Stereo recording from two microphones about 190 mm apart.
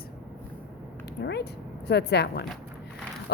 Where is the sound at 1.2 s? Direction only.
60° left (ahead or behind).